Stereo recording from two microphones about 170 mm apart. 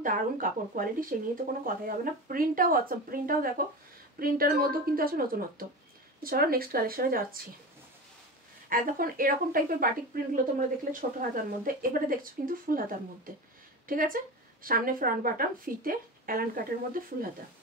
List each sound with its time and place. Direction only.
0.0 s speech: 55° right (ahead or behind)
8.6 s speech: 55° right (ahead or behind)